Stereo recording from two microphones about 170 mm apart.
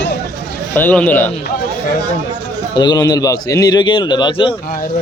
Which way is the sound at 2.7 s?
25° left (ahead or behind).